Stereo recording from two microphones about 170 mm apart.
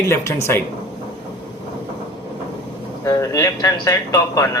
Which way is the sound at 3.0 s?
20° left (ahead or behind).